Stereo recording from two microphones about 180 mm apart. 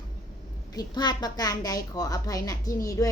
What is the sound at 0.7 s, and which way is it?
A woman's voice, 20° left (ahead or behind).